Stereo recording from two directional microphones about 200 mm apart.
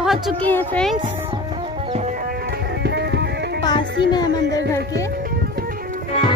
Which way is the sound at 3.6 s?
20° left (ahead or behind).